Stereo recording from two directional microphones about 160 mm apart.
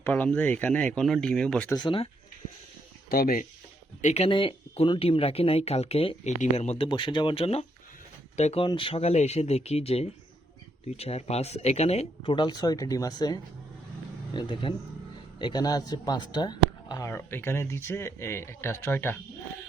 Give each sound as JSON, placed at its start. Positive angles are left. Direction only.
{"t": 0.0, "sound": "speech", "side_deg": 10}
{"t": 1.7, "sound": "speech", "side_deg": 30}
{"t": 4.0, "sound": "speech", "side_deg": 40}
{"t": 8.6, "sound": "speech", "side_deg": 30}